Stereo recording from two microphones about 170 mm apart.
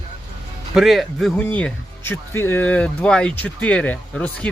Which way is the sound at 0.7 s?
Centre (ahead or behind).